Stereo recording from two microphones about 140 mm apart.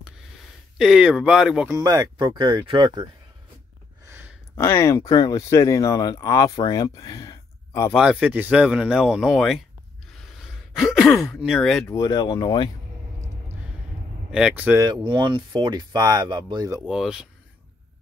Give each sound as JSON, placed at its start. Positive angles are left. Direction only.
{"t": 0.7, "sound": "speech", "side_deg": -5}
{"t": 1.7, "sound": "speech", "side_deg": -25}
{"t": 4.6, "sound": "speech", "side_deg": 20}
{"t": 7.9, "sound": "speech", "side_deg": -5}
{"t": 11.9, "sound": "speech", "side_deg": 25}
{"t": 14.3, "sound": "speech", "side_deg": -10}
{"t": 15.0, "sound": "speech", "side_deg": -35}
{"t": 16.8, "sound": "speech", "side_deg": -5}